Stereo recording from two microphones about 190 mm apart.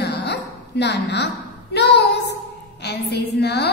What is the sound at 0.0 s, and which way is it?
Bow-wow, 60° left (ahead or behind).